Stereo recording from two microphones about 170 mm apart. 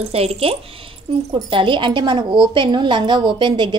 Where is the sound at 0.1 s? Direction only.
35° right (ahead or behind).